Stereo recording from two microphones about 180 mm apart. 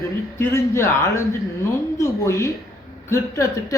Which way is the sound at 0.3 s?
15° left (ahead or behind).